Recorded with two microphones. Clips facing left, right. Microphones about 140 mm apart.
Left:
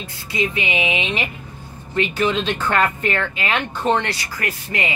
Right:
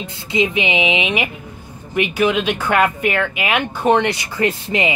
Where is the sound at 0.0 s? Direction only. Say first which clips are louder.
Right 5 dB; 20° right (ahead or behind).